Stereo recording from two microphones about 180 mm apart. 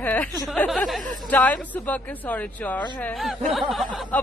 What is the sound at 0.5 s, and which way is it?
A woman's voice, 5° left (ahead or behind).